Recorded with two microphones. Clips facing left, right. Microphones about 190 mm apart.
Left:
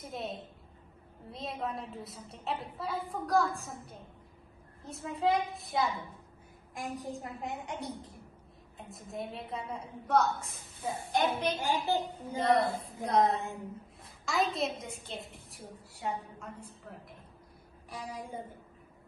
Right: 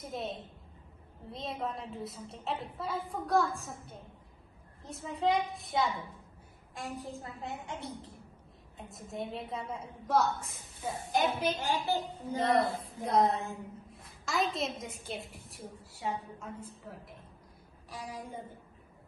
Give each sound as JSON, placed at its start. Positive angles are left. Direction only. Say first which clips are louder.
{"t": 0.0, "sound": "a woman's voice", "louder": "right 1 dB", "side_deg": 0}
{"t": 6.7, "sound": "a woman's voice", "louder": "left 2 dB", "side_deg": 15}
{"t": 8.7, "sound": "a woman's voice", "louder": "right 1 dB", "side_deg": 0}
{"t": 11.6, "sound": "a woman's voice", "louder": "left 1 dB", "side_deg": 15}
{"t": 12.4, "sound": "a woman's voice", "louder": "left 1 dB", "side_deg": 0}